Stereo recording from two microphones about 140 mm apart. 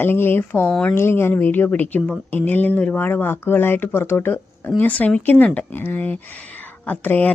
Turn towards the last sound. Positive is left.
turn(degrees=10)  # may be behind; listen again after turning